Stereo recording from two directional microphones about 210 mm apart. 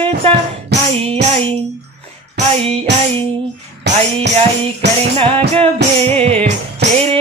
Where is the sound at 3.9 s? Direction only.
55° right (ahead or behind).